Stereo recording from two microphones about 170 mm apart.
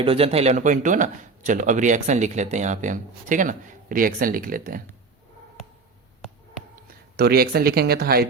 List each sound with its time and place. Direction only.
0.0 s speech: 35° right (ahead or behind); by 4.8 s 55° right (ahead or behind)
6.7 s speech: 65° right (ahead or behind)